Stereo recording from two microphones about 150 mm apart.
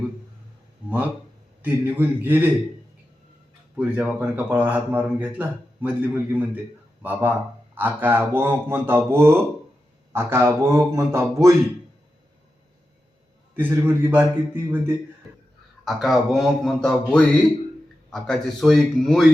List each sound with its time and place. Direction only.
1.6 s a man's voice: 15° right (ahead or behind)
3.8 s a man's voice: 10° right (ahead or behind)
13.5 s a man's voice: 15° right (ahead or behind)
15.8 s speech: centre (ahead or behind)